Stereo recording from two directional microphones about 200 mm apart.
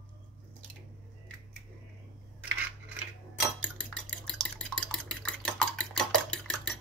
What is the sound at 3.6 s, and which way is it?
Dishes, 5° left (ahead or behind).